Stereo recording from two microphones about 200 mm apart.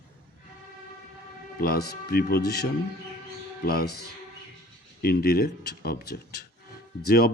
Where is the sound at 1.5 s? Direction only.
50° left (ahead or behind).